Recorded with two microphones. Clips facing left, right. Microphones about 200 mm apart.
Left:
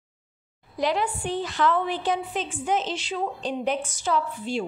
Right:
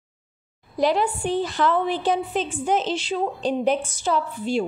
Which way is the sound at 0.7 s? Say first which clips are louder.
Right 4 dB; 35° right (ahead or behind).